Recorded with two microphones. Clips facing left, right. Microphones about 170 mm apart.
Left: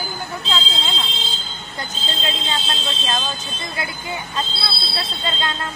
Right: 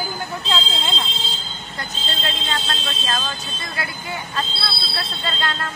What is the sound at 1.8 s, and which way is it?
Speech, 20° left (ahead or behind).